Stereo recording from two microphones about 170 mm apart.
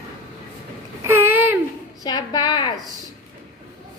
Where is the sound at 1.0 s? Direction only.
15° right (ahead or behind).